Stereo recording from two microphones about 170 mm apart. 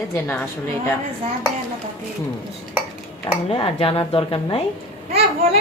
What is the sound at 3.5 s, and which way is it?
Speech, 35° left (ahead or behind).